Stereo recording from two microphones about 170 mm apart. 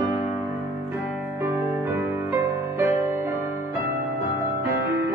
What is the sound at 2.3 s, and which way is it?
Music, 15° right (ahead or behind).